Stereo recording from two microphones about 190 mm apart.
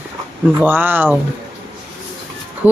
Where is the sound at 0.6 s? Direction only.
10° right (ahead or behind).